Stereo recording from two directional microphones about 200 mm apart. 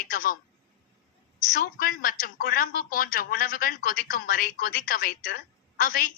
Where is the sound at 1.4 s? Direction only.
45° left (ahead or behind).